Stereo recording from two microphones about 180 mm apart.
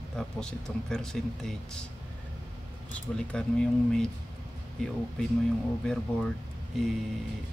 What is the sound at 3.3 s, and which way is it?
Speech, 5° left (ahead or behind).